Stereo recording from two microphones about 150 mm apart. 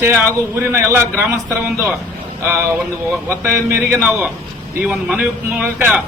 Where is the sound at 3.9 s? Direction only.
5° right (ahead or behind).